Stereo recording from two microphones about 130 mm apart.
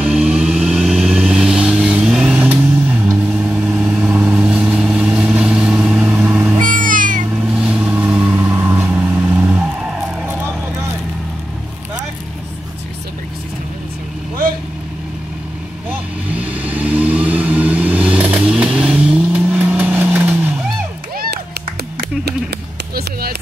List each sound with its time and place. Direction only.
0.0 s vehicle: 10° right (ahead or behind)
6.6 s cat: 90° right
7.5 s vehicle: 5° right (ahead or behind)
16.3 s vehicle: 10° right (ahead or behind)